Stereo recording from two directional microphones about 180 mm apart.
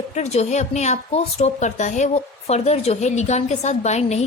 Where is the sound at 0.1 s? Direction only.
35° left (ahead or behind).